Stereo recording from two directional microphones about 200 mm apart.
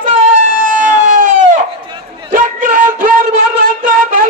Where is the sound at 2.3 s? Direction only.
45° right (ahead or behind).